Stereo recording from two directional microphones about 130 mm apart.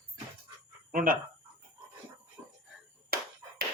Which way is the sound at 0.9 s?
90° right.